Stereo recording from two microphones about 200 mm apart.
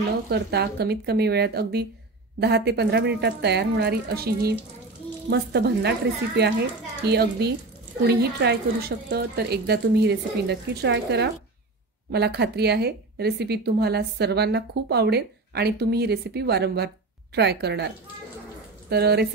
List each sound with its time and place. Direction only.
0.3 s a woman's voice: 55° right (ahead or behind)